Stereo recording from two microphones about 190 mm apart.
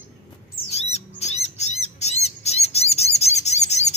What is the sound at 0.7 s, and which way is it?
Bird, 35° left (ahead or behind).